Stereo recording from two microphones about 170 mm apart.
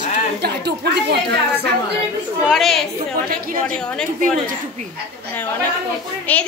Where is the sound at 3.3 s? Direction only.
55° right (ahead or behind).